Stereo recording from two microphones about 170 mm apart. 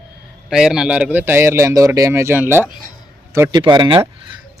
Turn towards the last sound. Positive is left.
turn(degrees=-30)  # may be behind; listen again after turning